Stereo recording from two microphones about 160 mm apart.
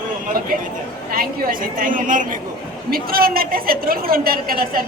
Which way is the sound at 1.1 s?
65° right (ahead or behind).